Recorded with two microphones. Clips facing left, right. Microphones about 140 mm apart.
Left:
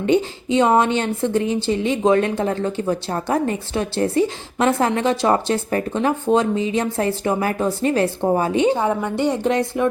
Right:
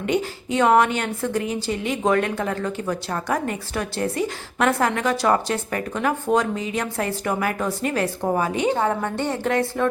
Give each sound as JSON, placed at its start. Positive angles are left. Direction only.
{"t": 0.0, "sound": "speech", "side_deg": 25}
{"t": 8.7, "sound": "a woman's voice", "side_deg": 15}